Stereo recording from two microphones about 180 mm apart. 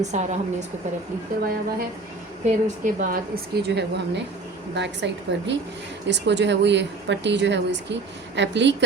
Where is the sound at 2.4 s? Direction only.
45° right (ahead or behind); by 4.2 s 65° right (ahead or behind).